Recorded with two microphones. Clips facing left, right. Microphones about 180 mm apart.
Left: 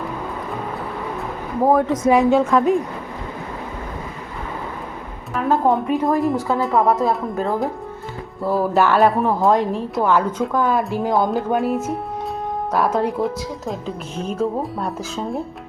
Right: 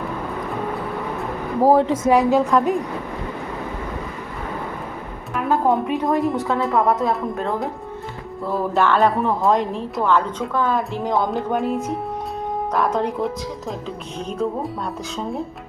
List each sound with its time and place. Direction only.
1.6 s speech: 30° right (ahead or behind)
2.0 s speech: centre (ahead or behind)
5.3 s speech: centre (ahead or behind)